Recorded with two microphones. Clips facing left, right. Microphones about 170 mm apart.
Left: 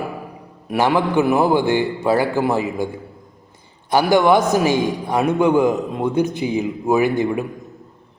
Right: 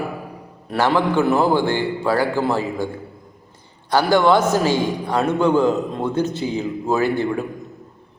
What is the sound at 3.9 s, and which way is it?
A man's voice, 15° left (ahead or behind).